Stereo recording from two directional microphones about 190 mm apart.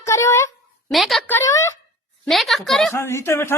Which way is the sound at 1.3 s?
15° left (ahead or behind).